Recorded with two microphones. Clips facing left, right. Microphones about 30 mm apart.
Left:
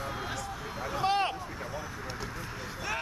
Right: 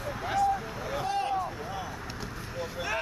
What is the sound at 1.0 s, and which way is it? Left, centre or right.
Boat, left.